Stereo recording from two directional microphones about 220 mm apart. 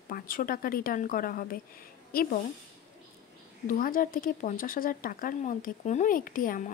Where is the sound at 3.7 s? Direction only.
40° left (ahead or behind).